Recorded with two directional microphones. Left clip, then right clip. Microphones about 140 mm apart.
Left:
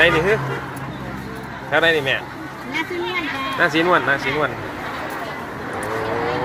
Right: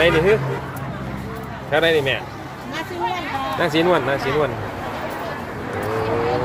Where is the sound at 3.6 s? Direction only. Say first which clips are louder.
Left 2 dB; 35° right (ahead or behind).